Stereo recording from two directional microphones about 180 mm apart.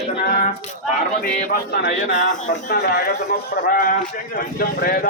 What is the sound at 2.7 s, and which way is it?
Speech, 65° left (ahead or behind).